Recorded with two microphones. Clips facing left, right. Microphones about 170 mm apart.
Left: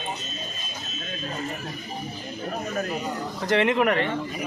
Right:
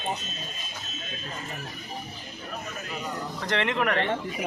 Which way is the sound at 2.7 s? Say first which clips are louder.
Left 10 dB; 45° left (ahead or behind).